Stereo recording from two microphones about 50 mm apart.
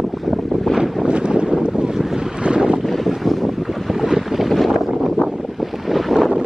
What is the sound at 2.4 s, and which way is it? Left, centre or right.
Boat, centre.